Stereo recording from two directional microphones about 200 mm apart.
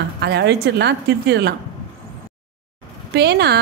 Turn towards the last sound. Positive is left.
turn(degrees=-55)  # may be behind; listen again after turning